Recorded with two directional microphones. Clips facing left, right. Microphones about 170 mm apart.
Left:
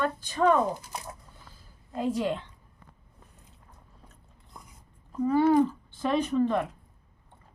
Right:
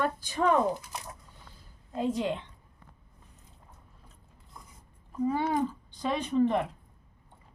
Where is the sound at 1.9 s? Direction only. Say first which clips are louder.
Left 1 dB; 25° right (ahead or behind).